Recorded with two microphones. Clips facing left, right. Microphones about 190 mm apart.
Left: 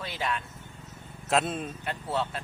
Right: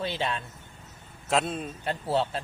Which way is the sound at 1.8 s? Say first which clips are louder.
Right 6 dB; 30° right (ahead or behind).